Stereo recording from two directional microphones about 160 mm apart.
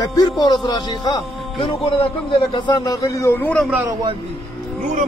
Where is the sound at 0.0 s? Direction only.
25° left (ahead or behind).